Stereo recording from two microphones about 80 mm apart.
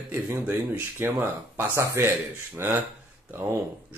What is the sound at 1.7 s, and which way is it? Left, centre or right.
Speech, right.